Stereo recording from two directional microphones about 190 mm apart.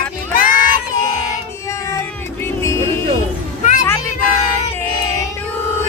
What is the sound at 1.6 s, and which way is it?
Music, 15° left (ahead or behind).